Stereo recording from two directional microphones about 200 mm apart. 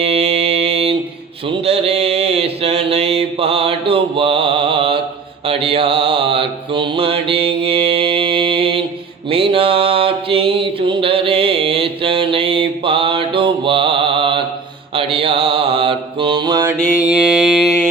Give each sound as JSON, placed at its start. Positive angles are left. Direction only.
{"t": 0.0, "sound": "mantra", "side_deg": -30}
{"t": 16.8, "sound": "mantra", "side_deg": -5}